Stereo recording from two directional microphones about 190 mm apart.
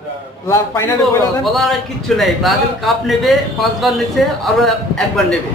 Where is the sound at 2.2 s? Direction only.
Centre (ahead or behind).